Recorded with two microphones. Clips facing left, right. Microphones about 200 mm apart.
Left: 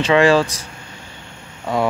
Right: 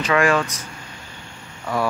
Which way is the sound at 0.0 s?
25° left (ahead or behind).